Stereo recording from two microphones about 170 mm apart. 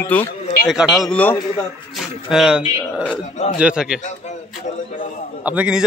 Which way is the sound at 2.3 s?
5° right (ahead or behind).